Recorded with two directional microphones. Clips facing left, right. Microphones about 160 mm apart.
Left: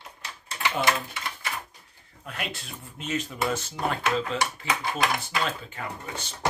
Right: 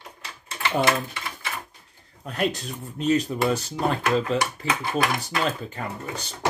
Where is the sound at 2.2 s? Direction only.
35° right (ahead or behind).